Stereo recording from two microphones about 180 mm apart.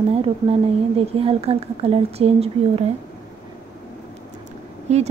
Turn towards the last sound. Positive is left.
turn(degrees=-40)  # may be behind; listen again after turning